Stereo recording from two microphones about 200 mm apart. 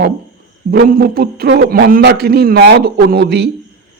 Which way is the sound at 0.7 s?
50° right (ahead or behind).